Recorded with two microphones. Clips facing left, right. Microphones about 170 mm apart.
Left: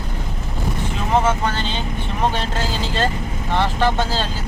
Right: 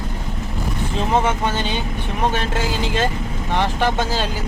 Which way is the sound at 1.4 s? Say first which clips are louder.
Right 1 dB; 15° right (ahead or behind).